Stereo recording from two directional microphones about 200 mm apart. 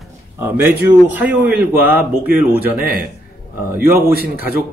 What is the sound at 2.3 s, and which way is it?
Speech, 50° right (ahead or behind).